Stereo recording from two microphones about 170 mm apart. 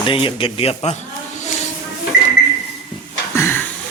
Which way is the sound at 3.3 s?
15° left (ahead or behind).